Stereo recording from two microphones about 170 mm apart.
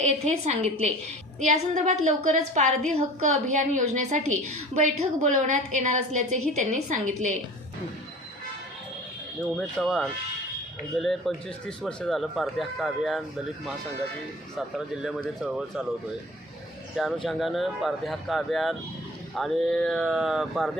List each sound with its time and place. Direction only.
0.0 s a woman's voice: 40° right (ahead or behind)
9.6 s speech: centre (ahead or behind)
15.0 s speech: centre (ahead or behind)
16.9 s speech: centre (ahead or behind)